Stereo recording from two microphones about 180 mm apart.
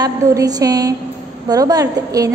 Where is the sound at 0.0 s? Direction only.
20° right (ahead or behind).